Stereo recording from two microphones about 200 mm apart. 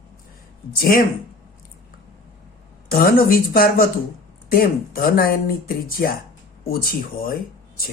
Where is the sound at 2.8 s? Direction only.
45° left (ahead or behind).